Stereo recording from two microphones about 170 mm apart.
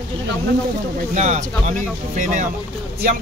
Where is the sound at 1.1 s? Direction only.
45° right (ahead or behind).